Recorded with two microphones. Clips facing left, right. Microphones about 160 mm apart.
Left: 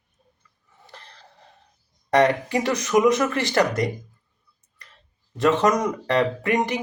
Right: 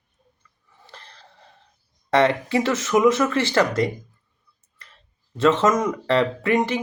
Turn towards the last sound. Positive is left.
turn(degrees=15)  # may be behind; listen again after turning